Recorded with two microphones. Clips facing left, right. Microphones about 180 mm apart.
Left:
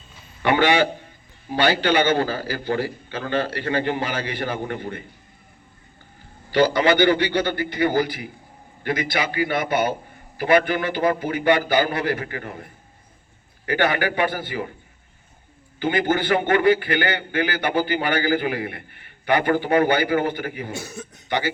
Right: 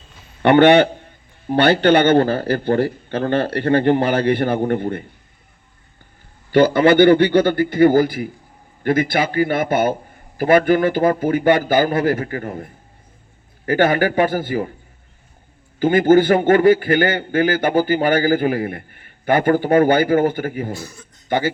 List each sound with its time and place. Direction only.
0.4 s a man's voice: 60° right (ahead or behind)
6.5 s a man's voice: 50° right (ahead or behind)
13.7 s a man's voice: 45° right (ahead or behind)
15.8 s a man's voice: 45° right (ahead or behind)